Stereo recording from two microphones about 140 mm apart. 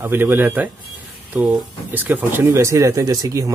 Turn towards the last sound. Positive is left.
turn(degrees=-25)  # may be behind; listen again after turning